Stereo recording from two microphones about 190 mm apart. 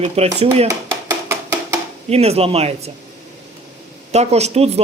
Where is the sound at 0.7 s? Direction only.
15° right (ahead or behind).